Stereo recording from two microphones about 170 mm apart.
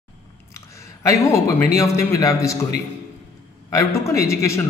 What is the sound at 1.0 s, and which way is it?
A man's voice, 15° left (ahead or behind).